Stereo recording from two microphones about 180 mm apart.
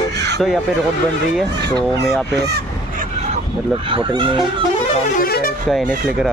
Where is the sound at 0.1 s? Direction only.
70° right (ahead or behind).